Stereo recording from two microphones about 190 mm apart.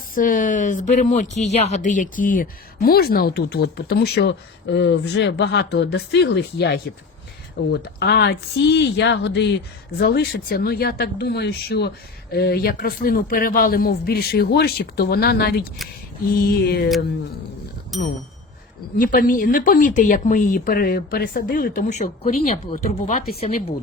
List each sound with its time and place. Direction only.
0.1 s speech: 45° left (ahead or behind); by 9.5 s 65° left (ahead or behind)
10.0 s speech: 55° left (ahead or behind)
17.9 s speech: centre (ahead or behind)
18.9 s speech: 50° left (ahead or behind)